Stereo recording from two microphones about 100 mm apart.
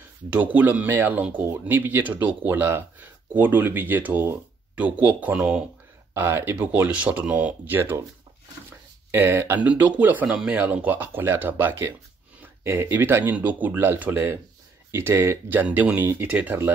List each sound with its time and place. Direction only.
0.3 s speech: 15° right (ahead or behind)
9.1 s speech: 25° right (ahead or behind)